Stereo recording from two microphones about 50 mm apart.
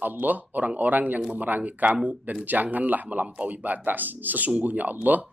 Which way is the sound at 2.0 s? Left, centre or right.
Right.